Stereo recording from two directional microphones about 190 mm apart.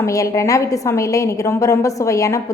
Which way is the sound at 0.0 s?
15° left (ahead or behind).